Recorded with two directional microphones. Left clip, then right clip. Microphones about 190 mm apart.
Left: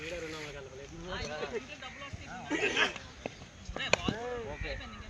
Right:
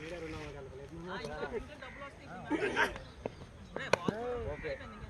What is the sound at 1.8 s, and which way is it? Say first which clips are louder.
Speech: left 2 dB; 15° right (ahead or behind).